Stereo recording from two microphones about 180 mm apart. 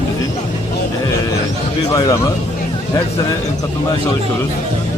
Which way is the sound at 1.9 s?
20° left (ahead or behind).